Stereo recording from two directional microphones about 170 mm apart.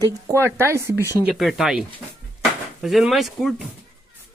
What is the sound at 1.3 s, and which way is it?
Speech, centre (ahead or behind).